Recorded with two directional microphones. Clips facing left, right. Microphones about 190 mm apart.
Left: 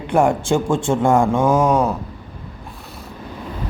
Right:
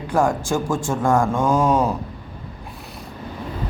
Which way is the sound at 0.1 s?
30° left (ahead or behind).